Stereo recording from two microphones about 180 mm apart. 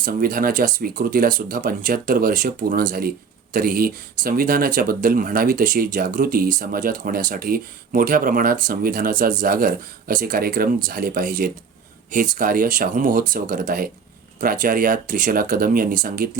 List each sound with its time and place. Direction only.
0.0 s speech: 50° right (ahead or behind)